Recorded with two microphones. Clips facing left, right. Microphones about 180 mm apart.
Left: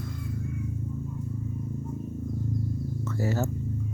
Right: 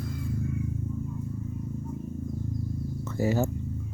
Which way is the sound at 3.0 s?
15° right (ahead or behind).